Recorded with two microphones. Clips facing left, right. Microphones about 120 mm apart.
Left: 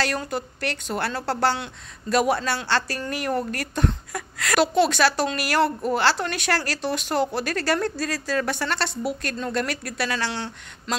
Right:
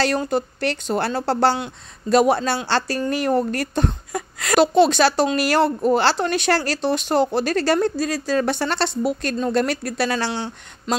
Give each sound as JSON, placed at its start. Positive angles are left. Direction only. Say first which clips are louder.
{"t": 0.0, "sound": "a woman's voice", "louder": "right 6 dB", "side_deg": -30}